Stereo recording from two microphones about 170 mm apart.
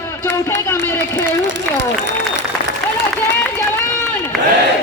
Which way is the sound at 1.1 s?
90° right.